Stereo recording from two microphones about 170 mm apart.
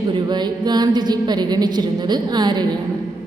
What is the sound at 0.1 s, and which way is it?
Music, 25° right (ahead or behind).